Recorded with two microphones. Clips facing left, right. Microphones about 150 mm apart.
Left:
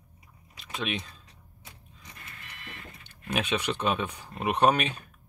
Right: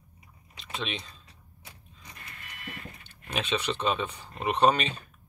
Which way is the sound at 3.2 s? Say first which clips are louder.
Left 1 dB; 10° left (ahead or behind).